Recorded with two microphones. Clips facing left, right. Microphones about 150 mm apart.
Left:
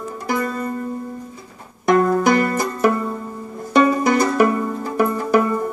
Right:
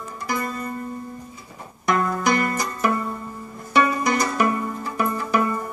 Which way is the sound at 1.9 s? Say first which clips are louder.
Left 6 dB; 45° left (ahead or behind).